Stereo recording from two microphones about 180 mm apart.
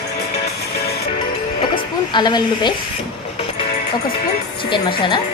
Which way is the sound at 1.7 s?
25° left (ahead or behind).